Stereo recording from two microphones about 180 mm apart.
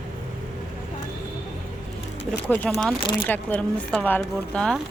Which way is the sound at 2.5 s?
5° left (ahead or behind).